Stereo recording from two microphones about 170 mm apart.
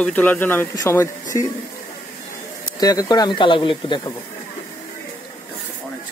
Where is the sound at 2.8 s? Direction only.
25° left (ahead or behind).